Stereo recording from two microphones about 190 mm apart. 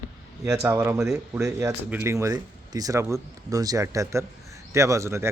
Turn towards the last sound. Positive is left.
turn(degrees=-15)  # may be behind; listen again after turning